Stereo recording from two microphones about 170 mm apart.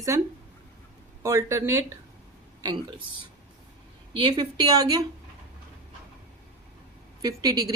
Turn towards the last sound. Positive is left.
turn(degrees=-20)  # may be behind; listen again after turning